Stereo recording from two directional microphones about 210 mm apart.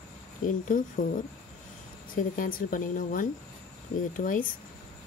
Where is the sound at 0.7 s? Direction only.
40° left (ahead or behind).